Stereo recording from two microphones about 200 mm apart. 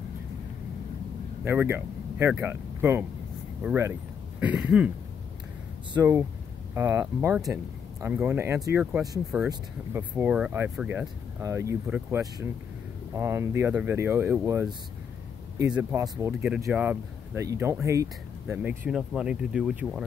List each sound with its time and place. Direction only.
1.4 s speech: 10° right (ahead or behind)
4.4 s throat clearing: 5° right (ahead or behind)
5.9 s speech: 15° right (ahead or behind)
15.7 s throat clearing: 5° right (ahead or behind)
16.0 s speech: 10° right (ahead or behind)